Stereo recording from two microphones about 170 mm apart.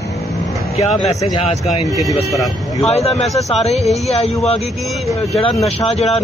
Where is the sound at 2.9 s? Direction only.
40° left (ahead or behind).